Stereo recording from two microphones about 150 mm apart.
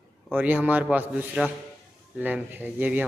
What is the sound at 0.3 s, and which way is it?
A man's voice, 10° right (ahead or behind).